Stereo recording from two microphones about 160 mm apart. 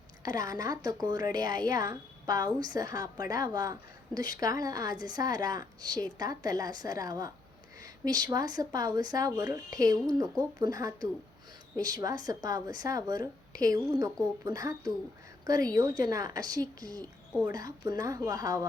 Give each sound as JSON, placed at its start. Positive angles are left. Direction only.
{"t": 0.2, "sound": "a woman's voice", "side_deg": -25}
{"t": 7.8, "sound": "a sound", "side_deg": -25}
{"t": 8.3, "sound": "a woman's voice", "side_deg": -25}